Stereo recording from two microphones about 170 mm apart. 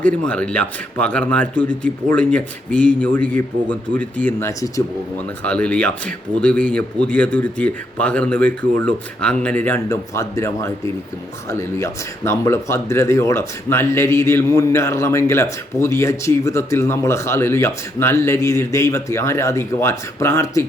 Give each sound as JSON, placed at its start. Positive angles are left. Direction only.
{"t": 0.0, "sound": "speech", "side_deg": 5}